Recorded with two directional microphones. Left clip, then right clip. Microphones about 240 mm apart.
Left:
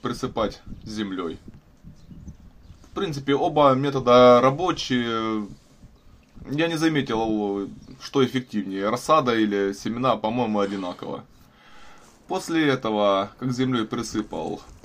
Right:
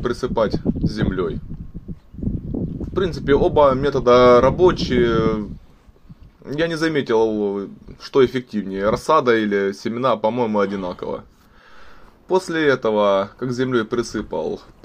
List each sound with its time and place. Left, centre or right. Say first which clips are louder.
0.0 s speech: right 6 dB; centre
2.9 s speech: right 6 dB; right
6.4 s speech: right 2 dB; centre
12.3 s speech: right 5 dB; centre